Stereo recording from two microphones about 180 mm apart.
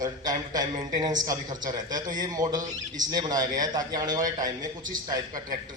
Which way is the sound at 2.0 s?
45° right (ahead or behind).